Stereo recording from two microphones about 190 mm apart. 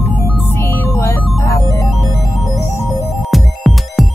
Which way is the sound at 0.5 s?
10° left (ahead or behind).